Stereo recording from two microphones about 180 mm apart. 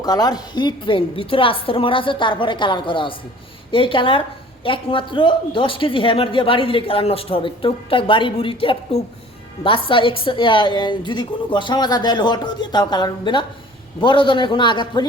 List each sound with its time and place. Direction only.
0.0 s speech: 20° left (ahead or behind)